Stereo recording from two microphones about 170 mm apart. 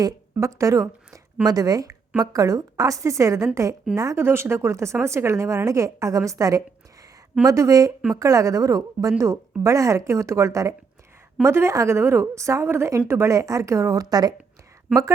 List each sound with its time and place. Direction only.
0.0 s a woman's voice: 20° right (ahead or behind)